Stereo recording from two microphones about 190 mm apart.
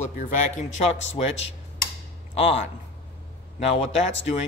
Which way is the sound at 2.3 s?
30° left (ahead or behind).